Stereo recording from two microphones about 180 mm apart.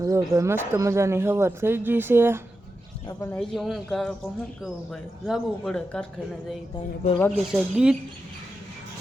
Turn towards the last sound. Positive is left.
turn(degrees=-5)  # may be behind; listen again after turning